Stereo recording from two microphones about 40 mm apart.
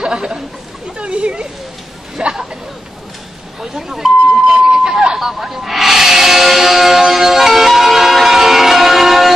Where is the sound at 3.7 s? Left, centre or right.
Centre.